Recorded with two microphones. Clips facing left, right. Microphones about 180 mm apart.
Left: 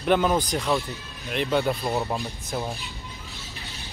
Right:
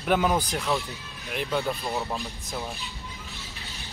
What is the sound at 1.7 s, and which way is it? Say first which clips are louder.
Speech: left 4 dB; 15° left (ahead or behind).